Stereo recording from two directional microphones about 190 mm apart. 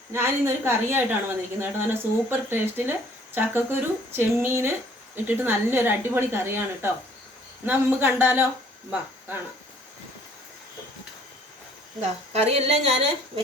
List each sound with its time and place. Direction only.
0.1 s a woman's voice: 15° right (ahead or behind)
12.5 s a woman's voice: 35° right (ahead or behind)